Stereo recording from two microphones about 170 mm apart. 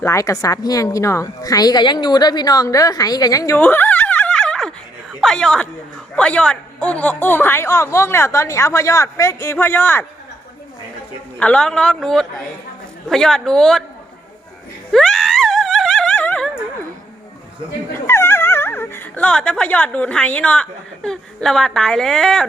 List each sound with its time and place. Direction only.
0.0 s a woman's voice: 20° left (ahead or behind)
11.3 s a man's voice: 5° left (ahead or behind)
14.9 s a sound: centre (ahead or behind)
17.9 s speech: 15° left (ahead or behind)